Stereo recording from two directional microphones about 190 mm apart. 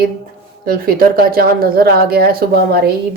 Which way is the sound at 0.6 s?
50° right (ahead or behind).